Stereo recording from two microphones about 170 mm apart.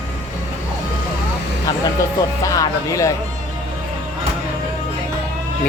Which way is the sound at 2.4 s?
20° left (ahead or behind).